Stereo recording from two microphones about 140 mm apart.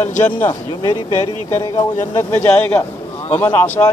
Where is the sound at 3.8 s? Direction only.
25° left (ahead or behind).